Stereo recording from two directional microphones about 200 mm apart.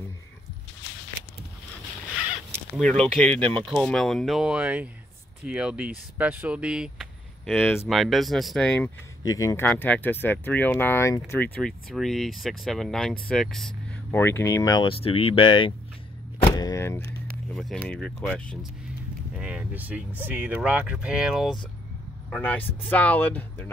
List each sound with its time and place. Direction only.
2.8 s speech: 5° left (ahead or behind)
9.2 s speech: 15° left (ahead or behind)
11.6 s speech: centre (ahead or behind)